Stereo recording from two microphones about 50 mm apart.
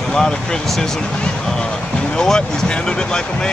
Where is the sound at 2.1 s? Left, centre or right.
Centre.